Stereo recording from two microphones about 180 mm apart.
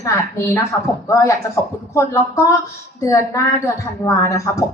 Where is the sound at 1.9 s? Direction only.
15° left (ahead or behind).